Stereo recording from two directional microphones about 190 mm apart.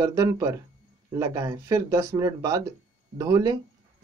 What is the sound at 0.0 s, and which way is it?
Speech, 20° right (ahead or behind).